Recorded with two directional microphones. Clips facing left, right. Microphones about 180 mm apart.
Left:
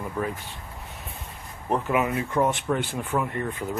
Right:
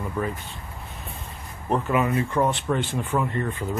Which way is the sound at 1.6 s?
10° left (ahead or behind).